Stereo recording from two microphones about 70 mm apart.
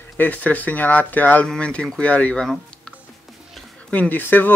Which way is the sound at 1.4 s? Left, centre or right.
Centre.